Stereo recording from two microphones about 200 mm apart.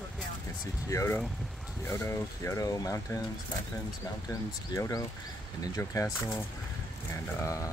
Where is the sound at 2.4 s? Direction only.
15° left (ahead or behind).